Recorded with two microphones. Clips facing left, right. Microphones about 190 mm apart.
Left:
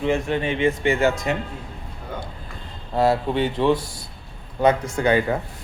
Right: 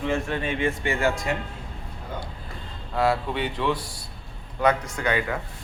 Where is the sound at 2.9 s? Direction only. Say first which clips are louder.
Left 4 dB; 25° left (ahead or behind).